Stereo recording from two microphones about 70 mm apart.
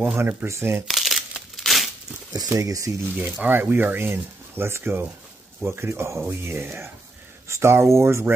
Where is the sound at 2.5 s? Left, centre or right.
Right.